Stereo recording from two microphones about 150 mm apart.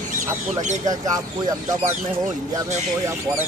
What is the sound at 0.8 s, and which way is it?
Speech, 25° right (ahead or behind).